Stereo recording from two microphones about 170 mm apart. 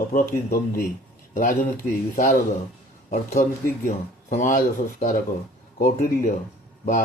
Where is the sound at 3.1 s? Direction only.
50° left (ahead or behind).